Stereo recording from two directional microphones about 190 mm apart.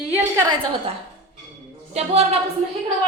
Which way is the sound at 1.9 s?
35° right (ahead or behind).